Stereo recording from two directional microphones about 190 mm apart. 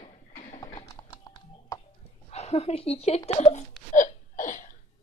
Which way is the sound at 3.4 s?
35° left (ahead or behind).